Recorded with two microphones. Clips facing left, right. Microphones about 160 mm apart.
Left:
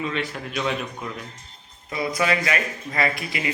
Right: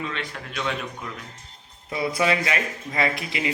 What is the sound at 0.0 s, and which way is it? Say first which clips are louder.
Speech: left 4 dB; 10° left (ahead or behind).